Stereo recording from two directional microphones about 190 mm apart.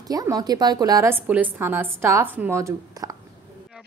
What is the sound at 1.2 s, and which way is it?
A woman's voice, 10° right (ahead or behind).